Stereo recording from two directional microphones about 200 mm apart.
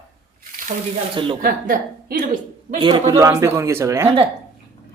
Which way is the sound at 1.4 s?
45° right (ahead or behind).